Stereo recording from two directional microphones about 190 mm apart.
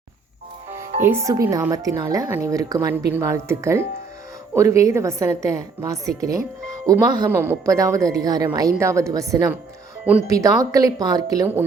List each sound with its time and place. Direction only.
1.0 s a woman's voice: 15° right (ahead or behind)